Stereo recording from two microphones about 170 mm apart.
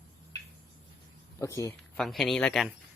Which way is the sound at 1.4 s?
20° left (ahead or behind).